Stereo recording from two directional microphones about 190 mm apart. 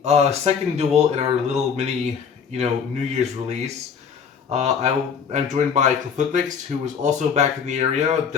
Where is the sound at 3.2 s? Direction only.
35° right (ahead or behind).